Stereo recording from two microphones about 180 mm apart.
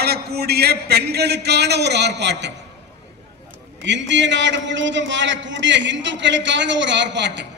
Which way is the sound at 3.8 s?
80° right.